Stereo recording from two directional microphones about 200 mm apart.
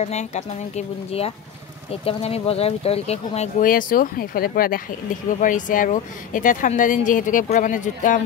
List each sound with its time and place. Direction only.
0.0 s speech: 35° left (ahead or behind)
3.6 s speech: 45° left (ahead or behind)